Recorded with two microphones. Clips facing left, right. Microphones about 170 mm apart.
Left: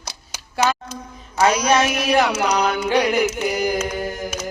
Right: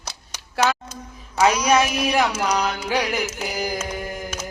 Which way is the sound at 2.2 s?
60° left (ahead or behind).